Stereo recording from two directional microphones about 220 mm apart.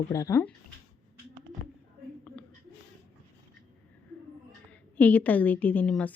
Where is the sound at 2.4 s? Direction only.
5° left (ahead or behind).